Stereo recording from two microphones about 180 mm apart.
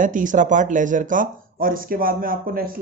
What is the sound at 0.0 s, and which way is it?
Speech, 45° right (ahead or behind).